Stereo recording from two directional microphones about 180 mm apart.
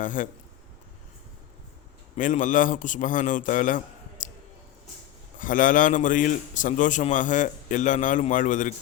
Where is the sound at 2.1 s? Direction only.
45° left (ahead or behind).